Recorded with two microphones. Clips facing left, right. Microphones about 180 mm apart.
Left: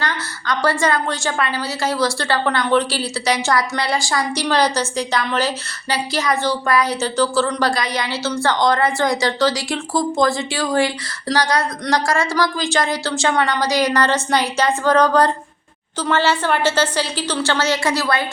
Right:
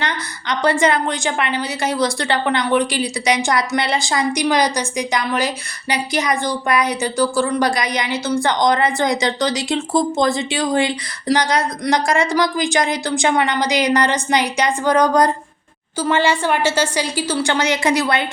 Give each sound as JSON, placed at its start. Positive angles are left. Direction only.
{"t": 0.0, "sound": "a woman's voice", "side_deg": -20}